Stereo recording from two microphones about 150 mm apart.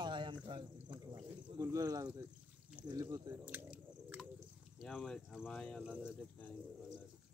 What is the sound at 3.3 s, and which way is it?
Chewing, 10° right (ahead or behind).